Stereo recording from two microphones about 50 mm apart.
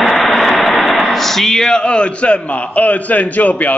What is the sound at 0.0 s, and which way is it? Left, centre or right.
Speech, centre.